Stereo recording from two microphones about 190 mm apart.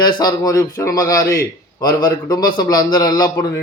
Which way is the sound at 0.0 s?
20° left (ahead or behind).